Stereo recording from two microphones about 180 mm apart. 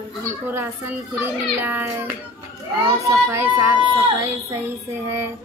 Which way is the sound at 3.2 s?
15° right (ahead or behind).